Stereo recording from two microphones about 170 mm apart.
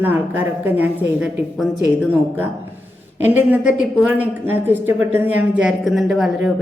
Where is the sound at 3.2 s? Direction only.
10° right (ahead or behind).